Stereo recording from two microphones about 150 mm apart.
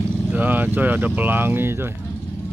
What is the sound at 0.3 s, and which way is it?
Speech, 10° right (ahead or behind).